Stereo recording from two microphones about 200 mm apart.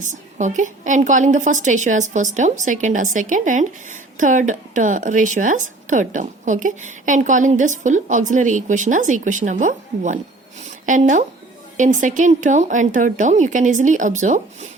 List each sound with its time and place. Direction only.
0.0 s a woman's voice: 40° right (ahead or behind)